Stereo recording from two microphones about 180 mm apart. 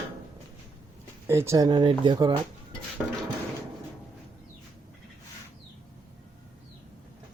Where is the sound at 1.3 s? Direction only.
15° right (ahead or behind).